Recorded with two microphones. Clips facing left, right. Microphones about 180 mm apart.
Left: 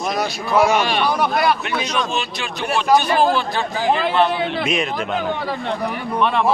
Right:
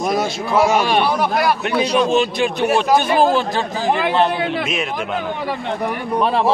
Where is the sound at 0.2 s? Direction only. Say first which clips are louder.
Right 1 dB; 25° right (ahead or behind).